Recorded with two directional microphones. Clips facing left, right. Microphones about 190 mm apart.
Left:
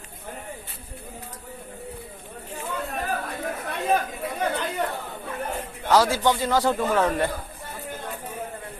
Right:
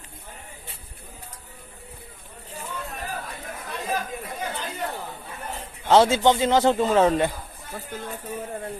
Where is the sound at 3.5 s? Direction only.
60° left (ahead or behind).